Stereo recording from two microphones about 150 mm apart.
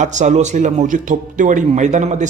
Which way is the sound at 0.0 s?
55° right (ahead or behind).